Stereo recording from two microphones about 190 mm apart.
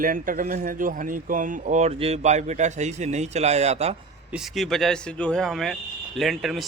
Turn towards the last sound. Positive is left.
turn(degrees=0)  # may be behind; listen again after turning